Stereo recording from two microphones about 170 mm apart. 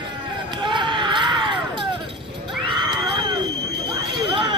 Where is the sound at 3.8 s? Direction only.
30° right (ahead or behind).